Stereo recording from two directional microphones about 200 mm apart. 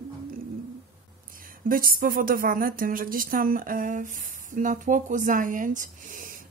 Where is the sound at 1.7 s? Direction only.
45° right (ahead or behind).